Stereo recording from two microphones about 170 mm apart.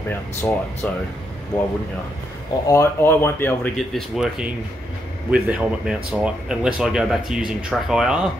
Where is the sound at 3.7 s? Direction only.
Centre (ahead or behind).